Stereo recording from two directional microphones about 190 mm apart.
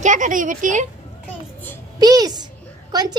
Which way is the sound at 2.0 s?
20° right (ahead or behind).